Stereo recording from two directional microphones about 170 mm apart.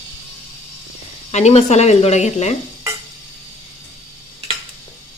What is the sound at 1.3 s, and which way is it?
Speech, 40° left (ahead or behind).